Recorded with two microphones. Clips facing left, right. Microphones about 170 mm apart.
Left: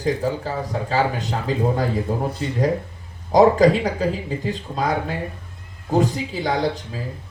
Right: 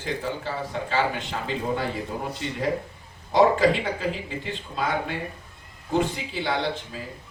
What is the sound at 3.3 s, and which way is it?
Speech, 40° left (ahead or behind).